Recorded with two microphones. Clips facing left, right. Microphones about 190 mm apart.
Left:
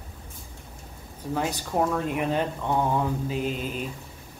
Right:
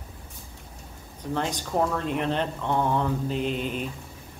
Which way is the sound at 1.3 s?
10° left (ahead or behind).